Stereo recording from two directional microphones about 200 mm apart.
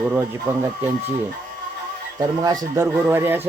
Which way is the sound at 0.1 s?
10° right (ahead or behind).